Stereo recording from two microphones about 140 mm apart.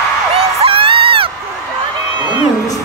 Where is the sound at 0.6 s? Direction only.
40° right (ahead or behind).